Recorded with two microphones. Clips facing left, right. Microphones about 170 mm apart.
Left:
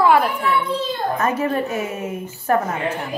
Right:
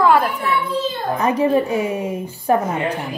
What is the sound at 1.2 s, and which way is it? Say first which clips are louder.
Speech: right 7 dB; 15° right (ahead or behind).